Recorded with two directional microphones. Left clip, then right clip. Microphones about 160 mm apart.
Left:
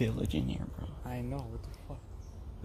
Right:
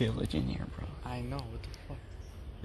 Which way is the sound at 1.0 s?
45° left (ahead or behind).